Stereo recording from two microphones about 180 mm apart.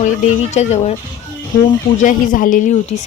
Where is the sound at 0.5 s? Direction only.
40° left (ahead or behind).